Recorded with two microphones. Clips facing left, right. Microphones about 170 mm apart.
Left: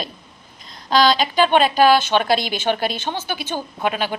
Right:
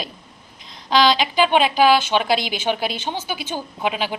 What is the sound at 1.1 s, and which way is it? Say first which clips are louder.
Speech: left 1 dB; 45° left (ahead or behind).